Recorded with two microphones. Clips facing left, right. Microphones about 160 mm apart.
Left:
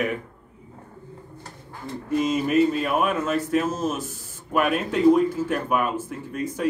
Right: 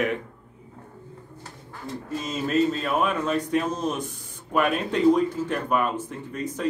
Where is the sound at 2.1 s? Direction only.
15° left (ahead or behind).